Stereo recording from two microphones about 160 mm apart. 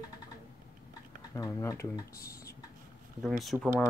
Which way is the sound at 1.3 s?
20° left (ahead or behind).